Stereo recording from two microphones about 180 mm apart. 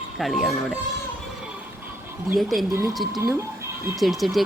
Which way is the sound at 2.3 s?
Centre (ahead or behind).